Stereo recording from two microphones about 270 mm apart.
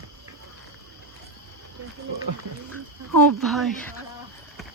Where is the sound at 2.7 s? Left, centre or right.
Right.